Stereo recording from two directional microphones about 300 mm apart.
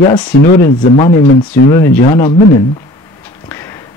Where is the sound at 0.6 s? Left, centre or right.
Left.